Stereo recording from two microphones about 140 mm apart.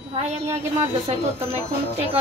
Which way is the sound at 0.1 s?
50° right (ahead or behind).